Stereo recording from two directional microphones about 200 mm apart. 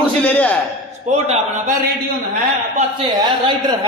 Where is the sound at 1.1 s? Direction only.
40° right (ahead or behind).